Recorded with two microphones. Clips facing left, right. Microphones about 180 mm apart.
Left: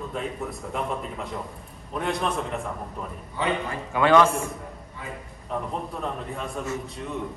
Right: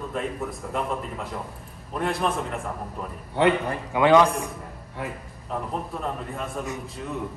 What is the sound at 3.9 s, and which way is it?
Speech, 15° right (ahead or behind).